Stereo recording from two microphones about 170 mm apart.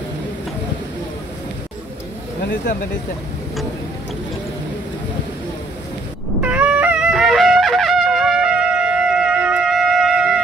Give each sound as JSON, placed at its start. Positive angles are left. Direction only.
{"t": 2.4, "sound": "speech", "side_deg": 65}
{"t": 6.4, "sound": "music", "side_deg": -10}